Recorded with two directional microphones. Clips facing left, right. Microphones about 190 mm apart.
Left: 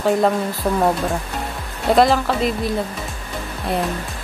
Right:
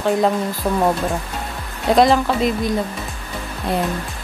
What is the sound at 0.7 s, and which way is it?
Speech, centre (ahead or behind).